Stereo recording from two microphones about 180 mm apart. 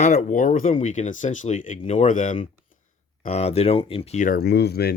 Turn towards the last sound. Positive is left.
turn(degrees=60)  # may be behind; listen again after turning